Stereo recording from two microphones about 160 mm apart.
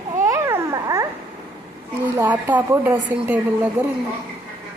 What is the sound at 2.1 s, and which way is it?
Speech, 10° right (ahead or behind).